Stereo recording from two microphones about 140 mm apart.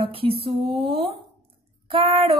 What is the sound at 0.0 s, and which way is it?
A woman's voice, 40° right (ahead or behind).